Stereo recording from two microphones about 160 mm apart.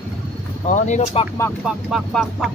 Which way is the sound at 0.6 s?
50° left (ahead or behind).